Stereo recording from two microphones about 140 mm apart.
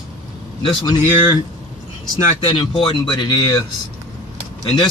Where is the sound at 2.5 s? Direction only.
35° left (ahead or behind).